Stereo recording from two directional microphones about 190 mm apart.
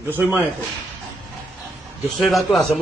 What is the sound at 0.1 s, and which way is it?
Speech, 10° right (ahead or behind).